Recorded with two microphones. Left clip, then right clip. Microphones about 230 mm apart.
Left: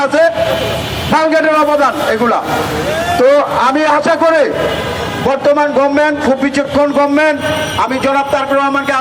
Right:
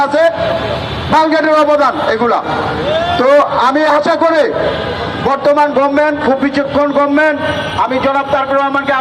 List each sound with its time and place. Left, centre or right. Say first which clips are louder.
0.0 s a man's voice: even; left